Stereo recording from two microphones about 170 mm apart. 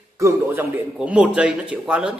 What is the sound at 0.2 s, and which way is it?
Speech, 10° right (ahead or behind).